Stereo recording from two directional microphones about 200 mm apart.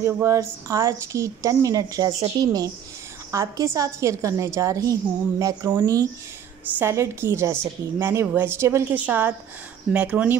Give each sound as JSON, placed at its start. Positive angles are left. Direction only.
{"t": 0.0, "sound": "a woman's voice", "side_deg": -15}